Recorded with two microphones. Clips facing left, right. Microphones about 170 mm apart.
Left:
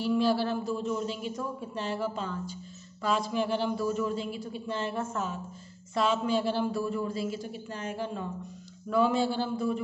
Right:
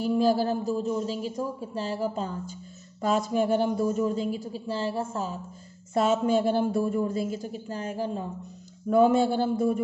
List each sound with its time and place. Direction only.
0.0 s a man's voice: 45° right (ahead or behind)
5.9 s a man's voice: 45° right (ahead or behind)
8.9 s a man's voice: 50° right (ahead or behind)